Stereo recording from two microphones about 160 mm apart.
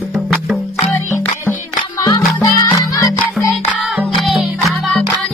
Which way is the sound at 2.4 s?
25° left (ahead or behind).